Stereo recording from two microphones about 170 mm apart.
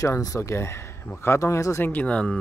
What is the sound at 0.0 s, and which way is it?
Speech, 20° left (ahead or behind).